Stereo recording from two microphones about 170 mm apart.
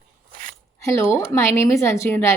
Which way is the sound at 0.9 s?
15° left (ahead or behind).